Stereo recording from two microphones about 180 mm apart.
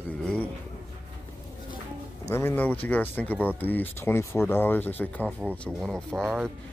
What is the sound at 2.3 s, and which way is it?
Speech, 10° left (ahead or behind).